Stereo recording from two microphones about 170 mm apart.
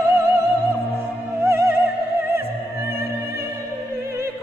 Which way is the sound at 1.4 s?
15° right (ahead or behind).